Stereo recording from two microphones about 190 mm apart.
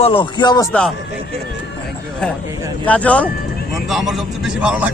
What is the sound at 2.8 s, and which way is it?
A man's voice, 5° left (ahead or behind).